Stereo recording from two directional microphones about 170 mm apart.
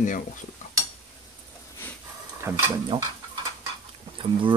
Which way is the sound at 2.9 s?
35° right (ahead or behind).